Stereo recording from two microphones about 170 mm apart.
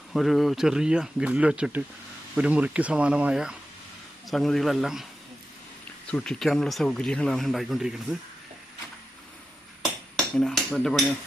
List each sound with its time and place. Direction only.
0.1 s speech: centre (ahead or behind)
6.1 s speech: 5° left (ahead or behind)
10.3 s speech: 5° left (ahead or behind)